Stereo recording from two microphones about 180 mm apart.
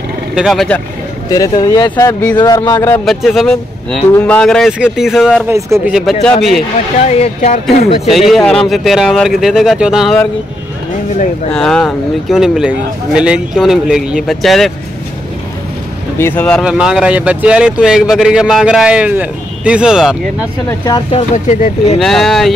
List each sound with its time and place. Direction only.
0.3 s speech: centre (ahead or behind)
1.3 s speech: 20° left (ahead or behind)
3.1 s speech: centre (ahead or behind)
7.1 s speech: 40° left (ahead or behind)
8.1 s speech: centre (ahead or behind)
11.5 s speech: 5° left (ahead or behind)
16.2 s speech: 10° left (ahead or behind)
16.6 s speech: 5° right (ahead or behind)
21.1 s speech: 40° left (ahead or behind)
22.0 s speech: centre (ahead or behind)